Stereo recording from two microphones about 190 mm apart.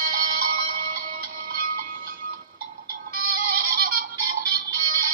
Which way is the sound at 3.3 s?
50° right (ahead or behind).